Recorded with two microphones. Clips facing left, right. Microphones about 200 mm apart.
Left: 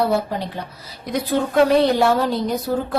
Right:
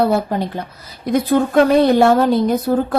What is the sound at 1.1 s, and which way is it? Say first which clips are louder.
A woman's voice: right 4 dB; 50° right (ahead or behind).